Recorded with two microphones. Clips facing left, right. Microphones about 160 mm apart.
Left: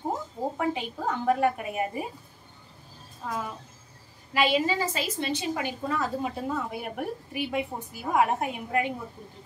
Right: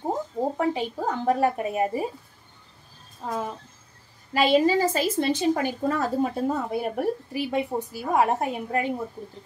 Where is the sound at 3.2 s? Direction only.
40° right (ahead or behind).